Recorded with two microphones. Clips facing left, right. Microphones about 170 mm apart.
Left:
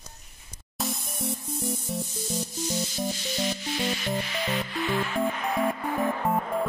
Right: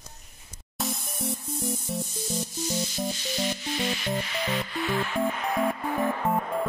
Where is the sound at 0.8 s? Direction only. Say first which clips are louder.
Even; centre (ahead or behind).